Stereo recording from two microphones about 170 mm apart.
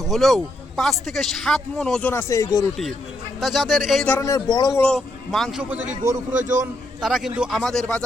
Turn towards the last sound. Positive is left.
turn(degrees=5)  # may be behind; listen again after turning